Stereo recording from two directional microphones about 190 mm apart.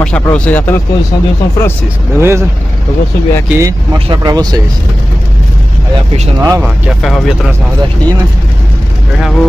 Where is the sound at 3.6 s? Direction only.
20° right (ahead or behind).